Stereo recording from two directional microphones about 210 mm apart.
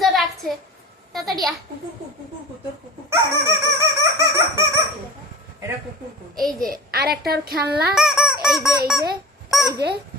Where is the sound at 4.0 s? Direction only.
15° right (ahead or behind).